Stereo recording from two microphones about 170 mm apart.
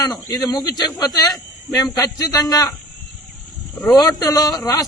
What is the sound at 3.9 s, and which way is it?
Speech, 20° left (ahead or behind).